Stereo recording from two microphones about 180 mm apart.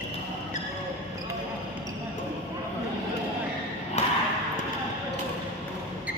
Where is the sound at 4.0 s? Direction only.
35° left (ahead or behind).